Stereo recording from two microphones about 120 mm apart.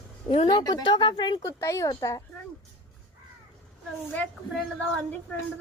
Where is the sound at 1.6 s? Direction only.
25° left (ahead or behind).